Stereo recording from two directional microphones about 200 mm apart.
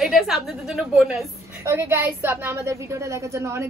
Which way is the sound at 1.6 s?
15° right (ahead or behind).